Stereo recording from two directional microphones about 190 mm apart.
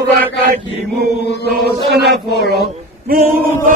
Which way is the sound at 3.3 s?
50° right (ahead or behind).